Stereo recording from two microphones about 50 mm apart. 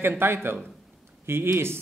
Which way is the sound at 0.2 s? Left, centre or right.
Right.